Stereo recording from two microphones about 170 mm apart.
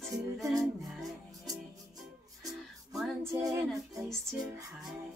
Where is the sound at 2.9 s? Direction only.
Centre (ahead or behind).